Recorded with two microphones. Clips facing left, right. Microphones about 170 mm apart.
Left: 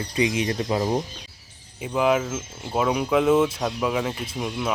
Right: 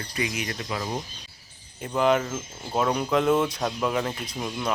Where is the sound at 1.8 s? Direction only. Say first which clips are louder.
Left 1 dB; 5° left (ahead or behind).